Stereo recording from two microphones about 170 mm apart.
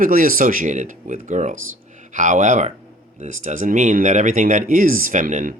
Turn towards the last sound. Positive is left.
turn(degrees=-50)  # may be behind; listen again after turning